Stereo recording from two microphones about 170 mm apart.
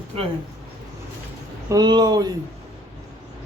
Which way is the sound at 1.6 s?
25° right (ahead or behind).